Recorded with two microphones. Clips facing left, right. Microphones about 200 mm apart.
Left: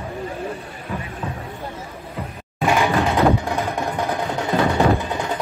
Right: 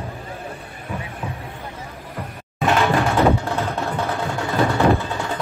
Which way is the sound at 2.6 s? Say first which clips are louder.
Even; 15° left (ahead or behind).